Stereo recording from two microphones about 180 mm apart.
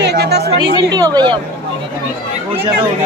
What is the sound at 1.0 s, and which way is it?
Speech, 20° right (ahead or behind).